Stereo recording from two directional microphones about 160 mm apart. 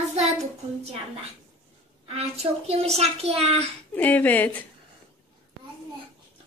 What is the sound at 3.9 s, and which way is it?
Speech, 10° left (ahead or behind).